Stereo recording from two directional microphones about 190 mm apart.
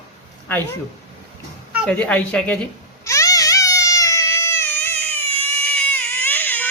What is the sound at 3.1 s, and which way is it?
Baby cry, 15° left (ahead or behind).